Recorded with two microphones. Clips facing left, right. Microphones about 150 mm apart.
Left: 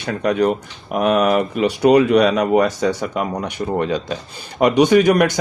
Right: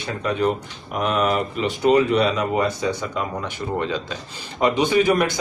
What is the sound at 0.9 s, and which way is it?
Speech, 55° left (ahead or behind).